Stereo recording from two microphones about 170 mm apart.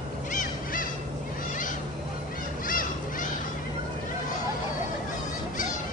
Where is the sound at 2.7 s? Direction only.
55° left (ahead or behind).